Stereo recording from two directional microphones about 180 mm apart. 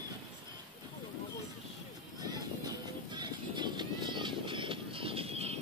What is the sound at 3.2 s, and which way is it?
Vehicle, 25° right (ahead or behind).